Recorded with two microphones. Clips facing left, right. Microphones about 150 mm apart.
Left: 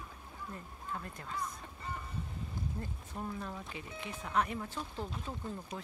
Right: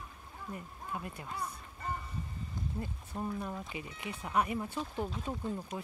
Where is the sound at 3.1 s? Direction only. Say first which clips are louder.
Right 4 dB; 10° right (ahead or behind).